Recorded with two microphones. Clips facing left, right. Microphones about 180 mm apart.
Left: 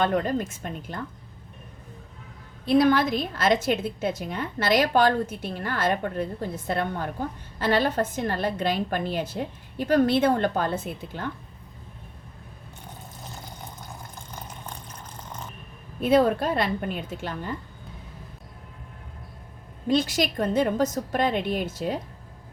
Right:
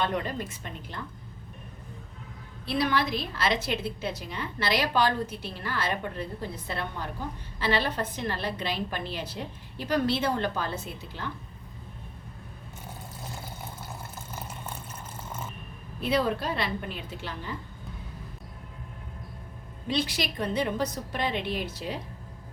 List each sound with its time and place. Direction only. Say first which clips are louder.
0.0 s a woman's voice: left 6 dB; 45° left (ahead or behind)
2.6 s a woman's voice: left 8 dB; 50° left (ahead or behind)
14.2 s water: right 1 dB; 5° right (ahead or behind)
16.0 s a woman's voice: left 7 dB; 50° left (ahead or behind)
19.9 s a woman's voice: left 6 dB; 45° left (ahead or behind)